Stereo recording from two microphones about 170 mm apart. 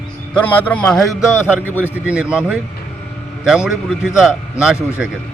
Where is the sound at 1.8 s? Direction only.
5° right (ahead or behind).